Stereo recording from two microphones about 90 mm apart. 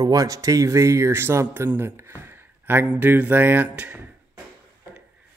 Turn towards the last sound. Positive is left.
turn(degrees=-15)  # may be behind; listen again after turning